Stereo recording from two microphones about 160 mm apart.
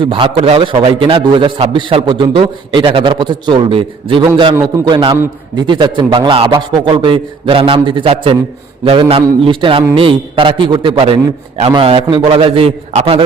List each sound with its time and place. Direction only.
0.0 s a man's voice: 35° right (ahead or behind)
4.9 s a man's voice: 30° right (ahead or behind)
5.1 s a man's voice: 15° right (ahead or behind)
5.6 s a man's voice: 30° right (ahead or behind)